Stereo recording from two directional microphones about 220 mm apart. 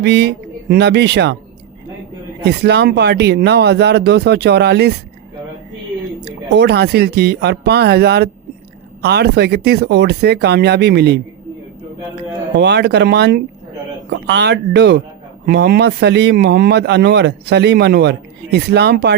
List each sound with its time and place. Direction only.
0.0 s speech: 50° right (ahead or behind)
2.4 s speech: 50° right (ahead or behind)
6.2 s speech: 50° right (ahead or behind)
12.5 s speech: 50° right (ahead or behind)